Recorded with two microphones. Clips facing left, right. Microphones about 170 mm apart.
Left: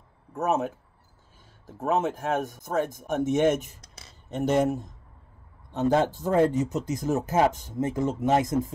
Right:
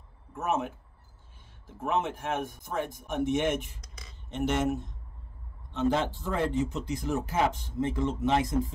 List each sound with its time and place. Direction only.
0.3 s speech: 40° left (ahead or behind)
5.7 s speech: 40° left (ahead or behind)